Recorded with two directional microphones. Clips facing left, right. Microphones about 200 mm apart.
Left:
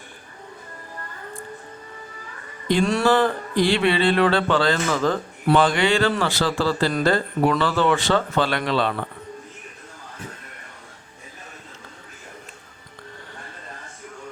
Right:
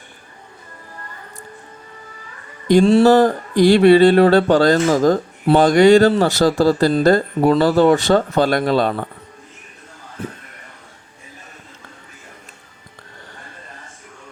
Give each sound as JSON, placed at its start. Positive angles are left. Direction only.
{"t": 2.8, "sound": "speech", "side_deg": -30}
{"t": 3.1, "sound": "speech", "side_deg": -45}